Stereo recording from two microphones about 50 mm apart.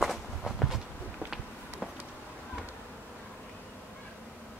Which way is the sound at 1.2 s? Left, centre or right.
Right.